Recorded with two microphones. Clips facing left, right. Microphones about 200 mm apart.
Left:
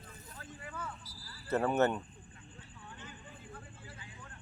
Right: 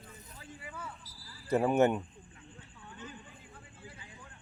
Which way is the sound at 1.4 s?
15° right (ahead or behind).